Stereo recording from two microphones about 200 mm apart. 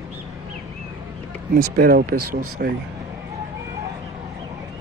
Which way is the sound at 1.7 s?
50° right (ahead or behind).